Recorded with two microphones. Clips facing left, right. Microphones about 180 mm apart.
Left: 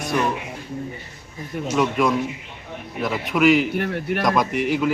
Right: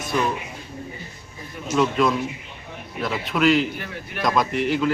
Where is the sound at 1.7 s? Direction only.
15° left (ahead or behind).